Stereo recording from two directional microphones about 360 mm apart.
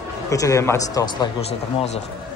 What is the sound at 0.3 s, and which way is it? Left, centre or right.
A man's voice, centre.